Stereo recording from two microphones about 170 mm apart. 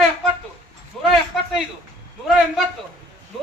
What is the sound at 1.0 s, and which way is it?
Speech, 5° left (ahead or behind).